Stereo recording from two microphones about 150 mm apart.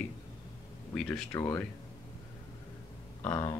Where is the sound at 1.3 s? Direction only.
15° left (ahead or behind).